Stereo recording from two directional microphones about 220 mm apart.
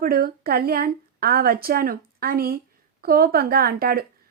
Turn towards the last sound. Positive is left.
turn(degrees=-45)  # may be behind; listen again after turning